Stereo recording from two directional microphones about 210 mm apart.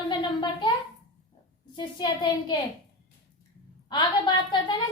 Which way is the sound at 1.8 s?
20° left (ahead or behind).